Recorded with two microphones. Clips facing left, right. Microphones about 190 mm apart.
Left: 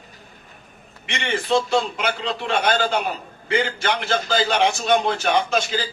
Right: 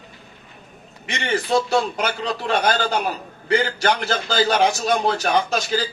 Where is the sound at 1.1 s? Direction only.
40° right (ahead or behind).